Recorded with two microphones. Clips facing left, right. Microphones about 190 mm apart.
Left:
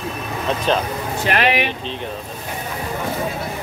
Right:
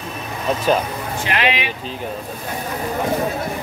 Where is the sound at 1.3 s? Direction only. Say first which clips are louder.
Left 3 dB; 45° left (ahead or behind).